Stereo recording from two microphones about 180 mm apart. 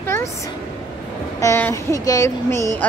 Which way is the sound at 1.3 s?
15° left (ahead or behind).